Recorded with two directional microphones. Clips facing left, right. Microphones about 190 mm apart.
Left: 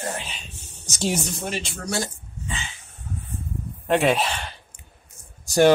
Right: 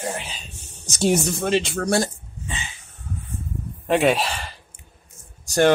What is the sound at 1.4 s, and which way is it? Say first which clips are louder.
Speech: right 9 dB; 80° right.